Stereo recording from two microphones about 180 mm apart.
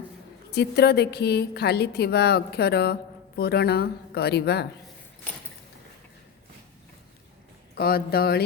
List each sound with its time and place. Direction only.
0.5 s a woman's voice: 65° left (ahead or behind)
7.8 s a woman's voice: 60° left (ahead or behind)